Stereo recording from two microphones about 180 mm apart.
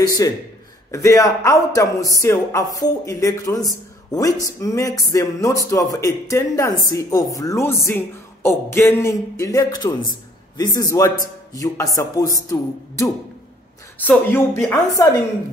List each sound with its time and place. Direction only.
0.0 s a man's voice: 20° left (ahead or behind)